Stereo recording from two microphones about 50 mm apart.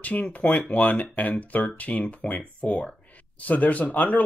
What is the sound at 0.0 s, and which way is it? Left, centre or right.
Speech, left.